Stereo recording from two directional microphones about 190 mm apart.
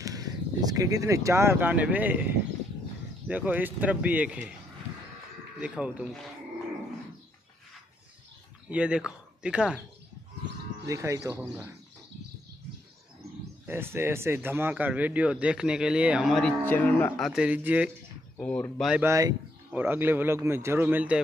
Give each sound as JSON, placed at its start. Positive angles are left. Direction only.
{"t": 0.0, "sound": "speech", "side_deg": -20}
{"t": 5.6, "sound": "speech", "side_deg": -5}
{"t": 8.6, "sound": "speech", "side_deg": -5}
{"t": 10.9, "sound": "speech", "side_deg": -15}
{"t": 13.7, "sound": "speech", "side_deg": -10}
{"t": 17.3, "sound": "speech", "side_deg": -5}
{"t": 18.4, "sound": "speech", "side_deg": 5}
{"t": 19.0, "sound": "speech", "side_deg": -15}